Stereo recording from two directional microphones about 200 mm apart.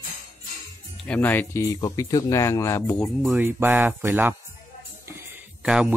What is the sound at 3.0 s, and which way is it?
Speech, 5° right (ahead or behind).